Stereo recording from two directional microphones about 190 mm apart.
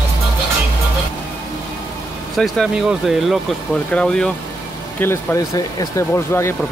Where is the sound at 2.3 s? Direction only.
Centre (ahead or behind).